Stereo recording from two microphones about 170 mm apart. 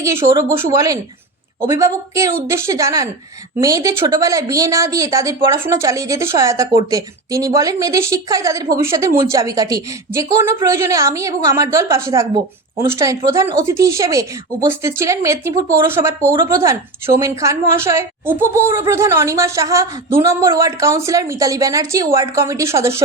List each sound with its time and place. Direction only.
0.0 s a woman's voice: 15° right (ahead or behind)